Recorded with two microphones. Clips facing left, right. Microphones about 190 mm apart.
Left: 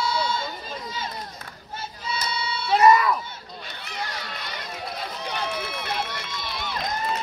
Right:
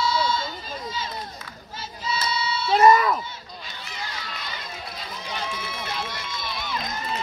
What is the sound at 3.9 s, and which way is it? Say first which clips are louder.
Run: left 3 dB; 60° left (ahead or behind).